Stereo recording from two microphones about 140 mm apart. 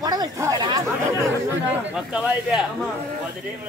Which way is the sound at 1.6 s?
5° right (ahead or behind).